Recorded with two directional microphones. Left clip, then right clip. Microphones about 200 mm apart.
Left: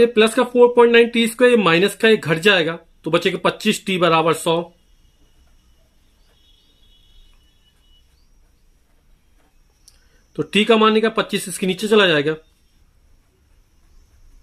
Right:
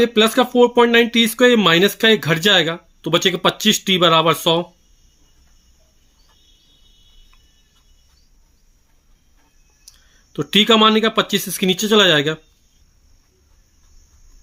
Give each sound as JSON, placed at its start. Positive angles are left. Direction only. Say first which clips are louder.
{"t": 0.0, "sound": "speech", "louder": "even", "side_deg": -25}
{"t": 10.3, "sound": "speech", "louder": "right 2 dB", "side_deg": -25}